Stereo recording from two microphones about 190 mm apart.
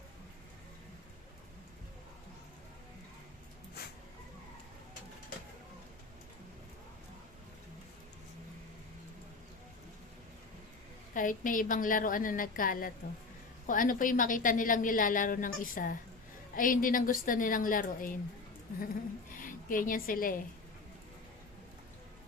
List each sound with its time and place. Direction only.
11.1 s a woman's voice: 45° left (ahead or behind)
19.4 s a woman's voice: 45° left (ahead or behind)